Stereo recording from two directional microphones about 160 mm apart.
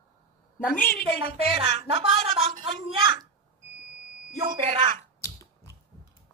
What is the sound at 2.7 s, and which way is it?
Speech, 35° right (ahead or behind).